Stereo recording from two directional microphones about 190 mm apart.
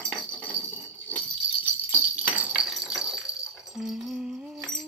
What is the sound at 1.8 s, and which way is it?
Jingle bell, 10° right (ahead or behind).